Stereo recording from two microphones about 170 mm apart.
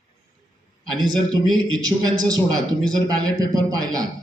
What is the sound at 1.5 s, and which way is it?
Speech, 25° right (ahead or behind).